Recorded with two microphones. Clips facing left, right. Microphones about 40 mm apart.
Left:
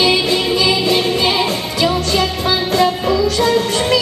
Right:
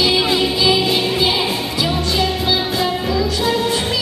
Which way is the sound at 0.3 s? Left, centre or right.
Left.